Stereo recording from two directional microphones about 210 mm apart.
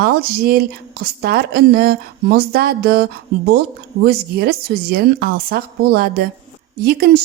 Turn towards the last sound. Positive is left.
turn(degrees=-45)  # may be behind; listen again after turning